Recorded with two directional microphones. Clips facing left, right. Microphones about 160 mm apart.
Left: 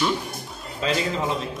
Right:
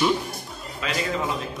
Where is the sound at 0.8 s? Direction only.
30° left (ahead or behind).